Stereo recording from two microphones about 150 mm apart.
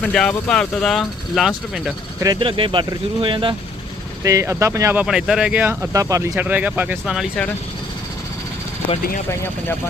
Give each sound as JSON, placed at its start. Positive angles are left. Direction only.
{"t": 0.0, "sound": "speech", "side_deg": 5}
{"t": 2.2, "sound": "speech", "side_deg": -30}
{"t": 4.2, "sound": "speech", "side_deg": -20}
{"t": 5.0, "sound": "speech", "side_deg": -5}